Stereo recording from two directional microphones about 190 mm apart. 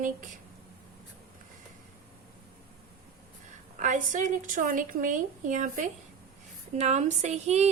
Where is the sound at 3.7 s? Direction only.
40° right (ahead or behind).